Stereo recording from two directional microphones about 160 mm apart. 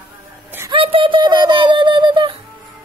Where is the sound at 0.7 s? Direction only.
35° right (ahead or behind).